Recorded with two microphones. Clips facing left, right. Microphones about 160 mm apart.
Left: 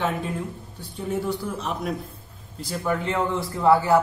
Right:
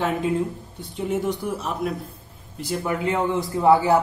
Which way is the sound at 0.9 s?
20° right (ahead or behind).